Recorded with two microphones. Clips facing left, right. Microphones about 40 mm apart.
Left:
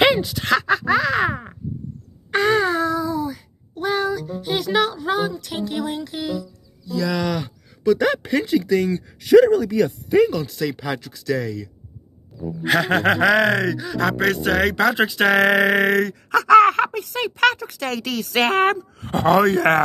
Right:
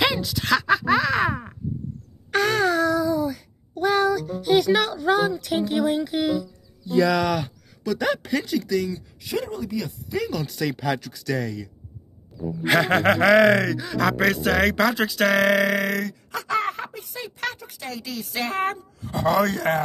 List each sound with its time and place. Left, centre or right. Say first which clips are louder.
0.2 s speech: left 2 dB; centre
1.3 s speech: left 1 dB; left
2.3 s a sound: left 2 dB; centre
3.7 s speech: right 2 dB; centre
8.2 s speech: left 5 dB; centre
8.7 s speech: left 4 dB; left
9.2 s speech: left 16 dB; left
10.4 s speech: left 1 dB; centre
15.0 s speech: left 3 dB; centre
15.7 s a sound: left 6 dB; left
16.4 s speech: left 13 dB; left
19.3 s a sound: left 6 dB; left